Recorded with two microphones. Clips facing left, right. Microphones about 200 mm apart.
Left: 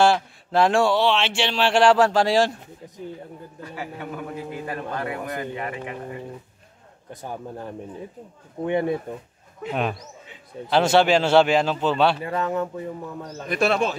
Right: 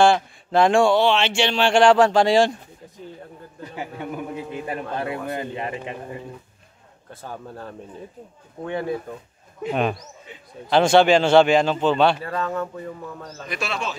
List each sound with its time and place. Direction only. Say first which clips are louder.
0.0 s mantra: right 2 dB; 5° left (ahead or behind)
3.6 s a man's voice: right 2 dB; 20° right (ahead or behind)
7.1 s speech: left 2 dB; 15° left (ahead or behind)
10.7 s mantra: right 2 dB; 5° left (ahead or behind)
12.2 s speech: left 1 dB; 15° left (ahead or behind)
13.5 s speech: left 7 dB; 55° left (ahead or behind)